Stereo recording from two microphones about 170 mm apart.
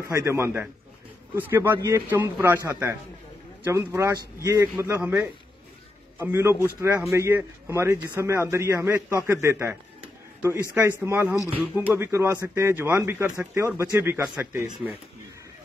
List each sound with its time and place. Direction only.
0.1 s a man's voice: 15° right (ahead or behind)